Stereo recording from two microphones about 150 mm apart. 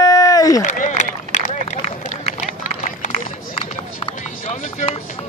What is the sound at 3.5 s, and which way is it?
Run, 35° left (ahead or behind).